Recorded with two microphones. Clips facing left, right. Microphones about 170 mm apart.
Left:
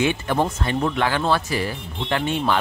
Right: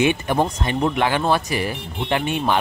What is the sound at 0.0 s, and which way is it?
Speech, 15° right (ahead or behind).